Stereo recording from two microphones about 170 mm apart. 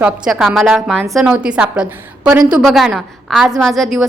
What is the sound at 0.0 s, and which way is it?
A woman's voice, centre (ahead or behind).